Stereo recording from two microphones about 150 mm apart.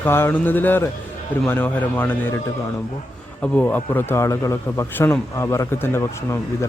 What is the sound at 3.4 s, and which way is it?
A man's voice, 10° left (ahead or behind).